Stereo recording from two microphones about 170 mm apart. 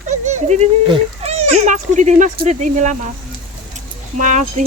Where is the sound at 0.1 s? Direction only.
45° right (ahead or behind).